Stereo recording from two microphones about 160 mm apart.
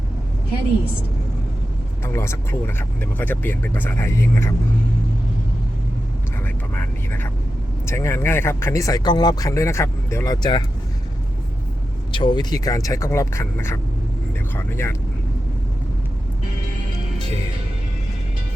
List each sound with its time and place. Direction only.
2.1 s speech: 15° left (ahead or behind)
6.4 s speech: 10° left (ahead or behind)
12.1 s speech: 25° left (ahead or behind)